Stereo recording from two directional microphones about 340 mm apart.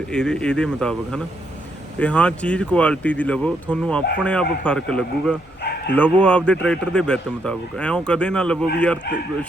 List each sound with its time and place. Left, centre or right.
0.1 s a man's voice: centre